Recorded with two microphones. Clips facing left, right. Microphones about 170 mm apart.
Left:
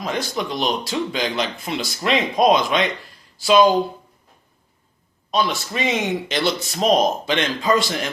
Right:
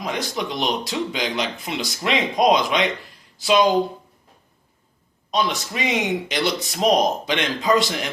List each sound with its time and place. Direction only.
0.0 s speech: 20° right (ahead or behind)
5.3 s speech: 20° right (ahead or behind)